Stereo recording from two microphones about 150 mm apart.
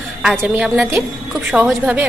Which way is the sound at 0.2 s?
10° right (ahead or behind).